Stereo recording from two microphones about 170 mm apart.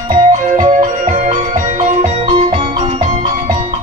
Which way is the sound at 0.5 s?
50° right (ahead or behind).